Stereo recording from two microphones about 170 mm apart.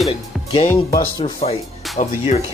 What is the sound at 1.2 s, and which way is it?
Speech, 35° left (ahead or behind).